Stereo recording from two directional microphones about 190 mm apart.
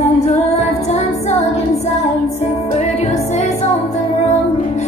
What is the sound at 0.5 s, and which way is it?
Female singing, 35° left (ahead or behind).